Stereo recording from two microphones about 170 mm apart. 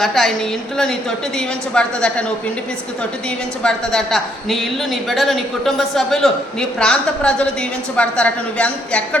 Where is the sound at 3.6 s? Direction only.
5° left (ahead or behind).